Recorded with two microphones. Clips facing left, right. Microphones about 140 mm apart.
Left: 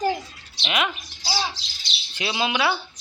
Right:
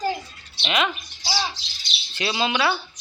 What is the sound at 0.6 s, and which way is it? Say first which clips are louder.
Speech: right 2 dB; 10° left (ahead or behind).